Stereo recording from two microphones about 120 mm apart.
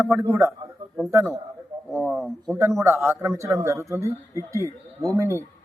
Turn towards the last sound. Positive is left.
turn(degrees=-25)  # may be behind; listen again after turning